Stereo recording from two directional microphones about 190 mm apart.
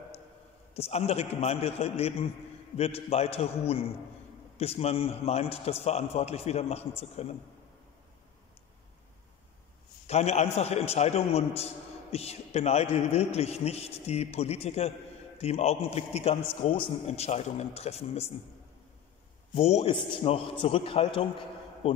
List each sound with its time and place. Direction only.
0.7 s a man's voice: 35° left (ahead or behind)
10.0 s a man's voice: 35° left (ahead or behind)
19.5 s a man's voice: 35° left (ahead or behind)